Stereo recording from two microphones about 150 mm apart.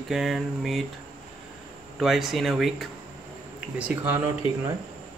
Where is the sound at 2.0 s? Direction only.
Centre (ahead or behind).